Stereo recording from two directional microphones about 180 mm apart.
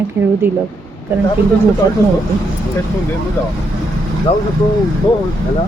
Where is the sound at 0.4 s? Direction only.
10° right (ahead or behind).